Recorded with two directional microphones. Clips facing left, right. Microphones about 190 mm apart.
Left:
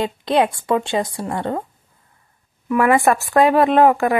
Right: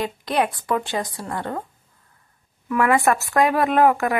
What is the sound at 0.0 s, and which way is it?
Speech, 25° left (ahead or behind).